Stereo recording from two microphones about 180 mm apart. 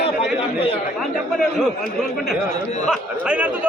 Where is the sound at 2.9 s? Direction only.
5° right (ahead or behind).